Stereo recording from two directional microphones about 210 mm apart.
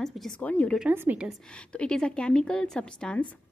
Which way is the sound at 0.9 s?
10° right (ahead or behind).